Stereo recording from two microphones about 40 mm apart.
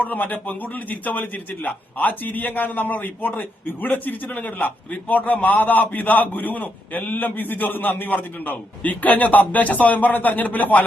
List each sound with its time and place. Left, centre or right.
0.0 s a man's voice: left